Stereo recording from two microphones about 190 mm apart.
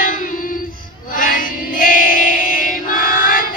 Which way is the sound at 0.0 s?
45° left (ahead or behind).